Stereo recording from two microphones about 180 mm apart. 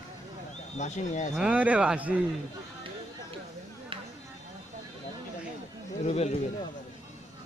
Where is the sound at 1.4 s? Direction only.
5° right (ahead or behind).